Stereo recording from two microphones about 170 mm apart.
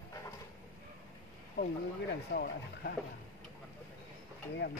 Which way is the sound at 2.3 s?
90° left.